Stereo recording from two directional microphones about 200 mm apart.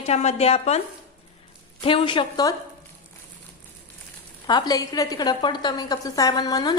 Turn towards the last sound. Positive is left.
turn(degrees=20)  # may be behind; listen again after turning